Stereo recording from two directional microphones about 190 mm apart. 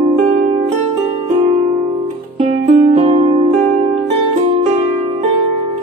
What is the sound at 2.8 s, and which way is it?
Music, 35° right (ahead or behind).